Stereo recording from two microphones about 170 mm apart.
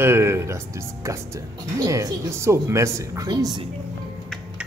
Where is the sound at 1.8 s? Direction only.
20° right (ahead or behind).